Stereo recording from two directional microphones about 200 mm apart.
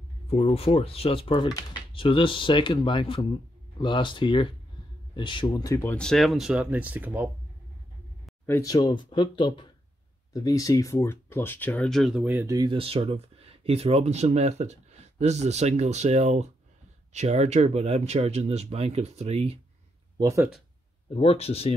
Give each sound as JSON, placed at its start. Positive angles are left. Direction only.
{"t": 0.3, "sound": "speech", "side_deg": 30}
{"t": 8.5, "sound": "speech", "side_deg": 15}
{"t": 20.2, "sound": "speech", "side_deg": -15}
{"t": 21.1, "sound": "speech", "side_deg": 30}